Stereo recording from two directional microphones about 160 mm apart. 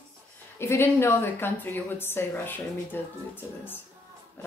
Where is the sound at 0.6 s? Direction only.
15° left (ahead or behind).